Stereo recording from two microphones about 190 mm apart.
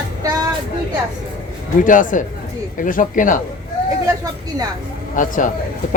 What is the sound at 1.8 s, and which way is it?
Speech, 45° left (ahead or behind).